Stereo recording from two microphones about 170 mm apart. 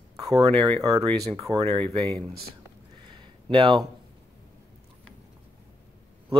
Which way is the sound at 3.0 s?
30° right (ahead or behind).